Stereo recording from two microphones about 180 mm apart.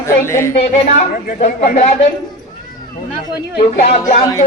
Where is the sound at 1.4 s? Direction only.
40° left (ahead or behind).